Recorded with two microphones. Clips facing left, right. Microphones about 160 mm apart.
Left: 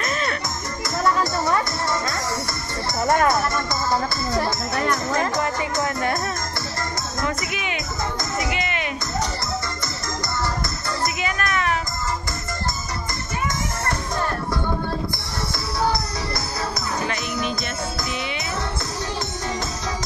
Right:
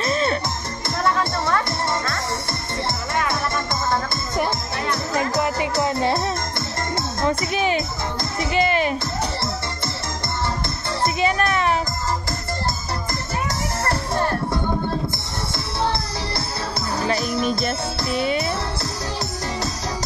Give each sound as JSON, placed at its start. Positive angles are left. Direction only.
{"t": 0.0, "sound": "music", "side_deg": -30}
{"t": 3.1, "sound": "music", "side_deg": 50}
{"t": 5.4, "sound": "music", "side_deg": -15}
{"t": 7.2, "sound": "music", "side_deg": -30}
{"t": 11.1, "sound": "music", "side_deg": -30}
{"t": 13.8, "sound": "music", "side_deg": -30}
{"t": 17.1, "sound": "music", "side_deg": -35}
{"t": 18.1, "sound": "jingle bell", "side_deg": -40}